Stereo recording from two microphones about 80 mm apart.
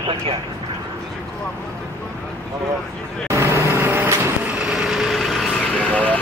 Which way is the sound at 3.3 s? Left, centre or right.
Right.